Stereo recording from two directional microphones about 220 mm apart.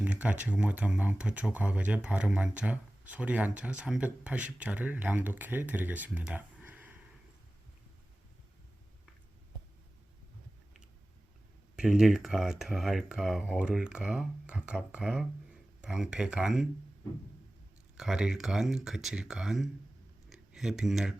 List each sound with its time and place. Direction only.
0.0 s speech: 5° right (ahead or behind)
11.8 s speech: 5° right (ahead or behind)
17.9 s speech: 5° right (ahead or behind)